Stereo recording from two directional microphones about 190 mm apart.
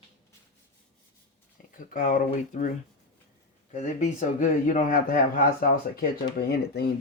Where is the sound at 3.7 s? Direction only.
40° left (ahead or behind).